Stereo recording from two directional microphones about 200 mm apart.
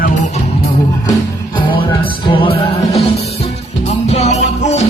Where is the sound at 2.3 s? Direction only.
25° left (ahead or behind).